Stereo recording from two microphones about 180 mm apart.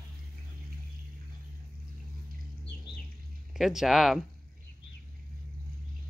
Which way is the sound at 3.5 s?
Centre (ahead or behind).